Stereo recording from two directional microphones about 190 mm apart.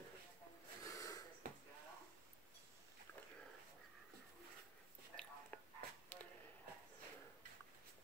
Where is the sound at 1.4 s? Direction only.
45° right (ahead or behind).